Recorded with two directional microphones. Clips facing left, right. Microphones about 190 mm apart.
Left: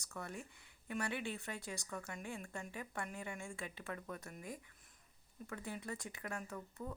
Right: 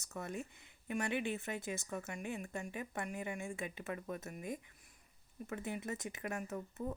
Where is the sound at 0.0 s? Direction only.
20° right (ahead or behind).